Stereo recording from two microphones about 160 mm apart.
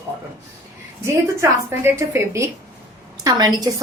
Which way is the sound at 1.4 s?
15° right (ahead or behind).